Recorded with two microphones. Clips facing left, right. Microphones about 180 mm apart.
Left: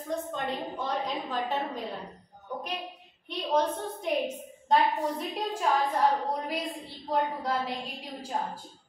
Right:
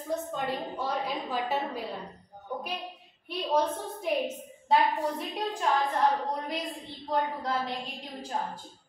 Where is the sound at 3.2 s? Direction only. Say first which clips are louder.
Even; 5° right (ahead or behind).